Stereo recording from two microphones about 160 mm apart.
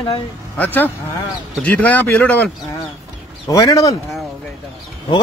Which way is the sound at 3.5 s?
20° left (ahead or behind).